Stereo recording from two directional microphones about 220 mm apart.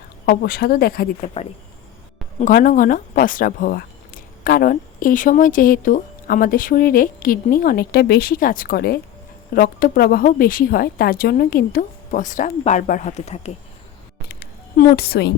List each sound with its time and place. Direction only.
0.3 s speech: 40° left (ahead or behind)
2.4 s speech: 40° left (ahead or behind)
14.3 s a sound: 45° left (ahead or behind)